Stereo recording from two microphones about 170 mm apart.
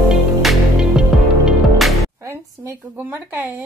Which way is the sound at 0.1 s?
Centre (ahead or behind).